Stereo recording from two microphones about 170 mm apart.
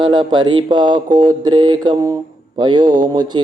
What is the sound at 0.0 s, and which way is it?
Mantra, 25° right (ahead or behind).